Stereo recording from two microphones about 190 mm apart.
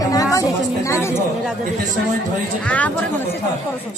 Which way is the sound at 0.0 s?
20° left (ahead or behind).